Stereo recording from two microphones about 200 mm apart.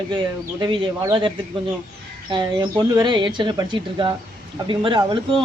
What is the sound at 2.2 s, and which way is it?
Speech, 20° right (ahead or behind).